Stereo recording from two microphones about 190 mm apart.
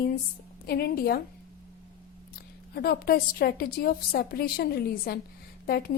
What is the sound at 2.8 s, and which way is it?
A woman's voice, 55° left (ahead or behind).